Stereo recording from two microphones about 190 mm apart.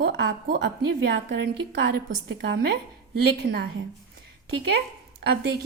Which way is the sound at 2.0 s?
60° right (ahead or behind).